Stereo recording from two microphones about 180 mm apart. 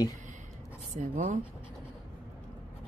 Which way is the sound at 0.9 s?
45° right (ahead or behind).